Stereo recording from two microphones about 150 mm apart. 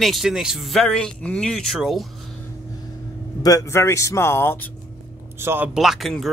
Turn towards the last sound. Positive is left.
turn(degrees=0)  # may be behind; listen again after turning